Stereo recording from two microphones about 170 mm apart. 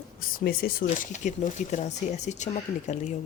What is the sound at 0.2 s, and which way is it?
Speech, 55° left (ahead or behind).